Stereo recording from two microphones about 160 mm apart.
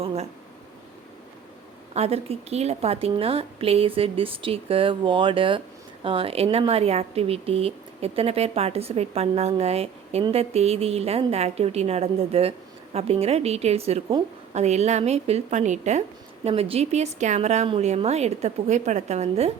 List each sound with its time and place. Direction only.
0.0 s speech: 40° right (ahead or behind)
1.9 s a woman's voice: 40° right (ahead or behind)